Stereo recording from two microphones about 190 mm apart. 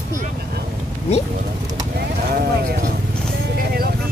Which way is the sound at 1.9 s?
55° right (ahead or behind).